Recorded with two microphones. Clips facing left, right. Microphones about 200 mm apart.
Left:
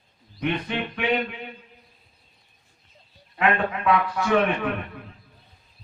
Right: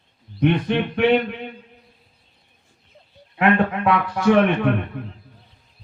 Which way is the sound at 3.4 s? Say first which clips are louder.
Right 5 dB; 60° right (ahead or behind).